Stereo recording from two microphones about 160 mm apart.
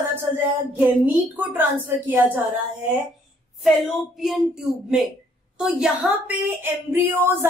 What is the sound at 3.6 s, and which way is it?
A woman's voice, centre (ahead or behind).